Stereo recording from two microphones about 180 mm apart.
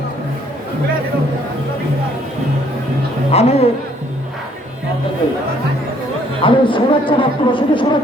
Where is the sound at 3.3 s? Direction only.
35° left (ahead or behind).